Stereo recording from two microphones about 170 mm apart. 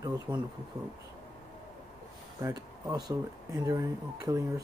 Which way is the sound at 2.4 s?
20° right (ahead or behind).